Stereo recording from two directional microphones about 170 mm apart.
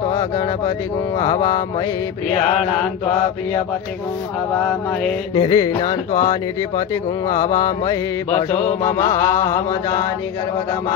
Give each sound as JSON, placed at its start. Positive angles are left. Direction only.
{"t": 1.1, "sound": "mantra", "side_deg": 20}
{"t": 5.3, "sound": "mantra", "side_deg": 30}
{"t": 7.5, "sound": "mantra", "side_deg": 20}
{"t": 8.4, "sound": "mantra", "side_deg": 40}
{"t": 8.8, "sound": "mantra", "side_deg": 15}